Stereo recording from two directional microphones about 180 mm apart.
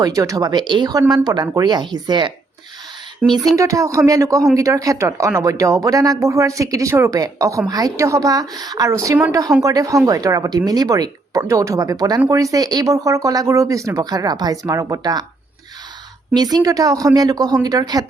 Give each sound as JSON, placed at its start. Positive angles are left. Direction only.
{"t": 0.0, "sound": "speech", "side_deg": -20}
{"t": 3.2, "sound": "speech", "side_deg": 0}
{"t": 3.6, "sound": "speech", "side_deg": -15}
{"t": 16.3, "sound": "speech", "side_deg": -20}